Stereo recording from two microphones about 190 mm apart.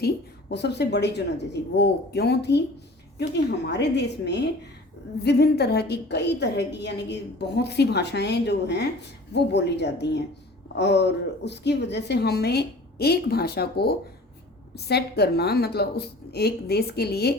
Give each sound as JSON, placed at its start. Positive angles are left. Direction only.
{"t": 0.0, "sound": "a woman's voice", "side_deg": 60}